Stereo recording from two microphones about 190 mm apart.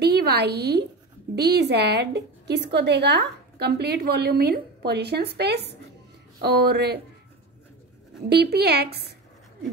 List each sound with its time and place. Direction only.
0.0 s a woman's voice: 60° right (ahead or behind)
8.3 s a woman's voice: 55° right (ahead or behind)